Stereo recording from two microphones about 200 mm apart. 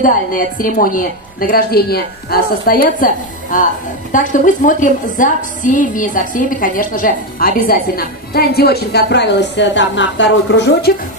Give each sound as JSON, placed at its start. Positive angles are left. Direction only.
{"t": 0.0, "sound": "a woman's voice", "side_deg": 40}